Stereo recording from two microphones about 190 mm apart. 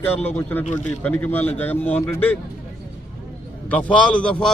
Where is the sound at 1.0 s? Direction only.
10° left (ahead or behind).